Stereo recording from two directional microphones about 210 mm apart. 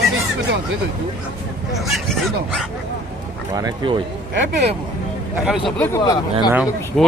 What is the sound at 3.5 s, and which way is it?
Speech, 20° right (ahead or behind).